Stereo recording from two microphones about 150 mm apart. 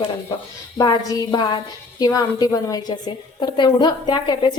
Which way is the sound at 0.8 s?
25° left (ahead or behind).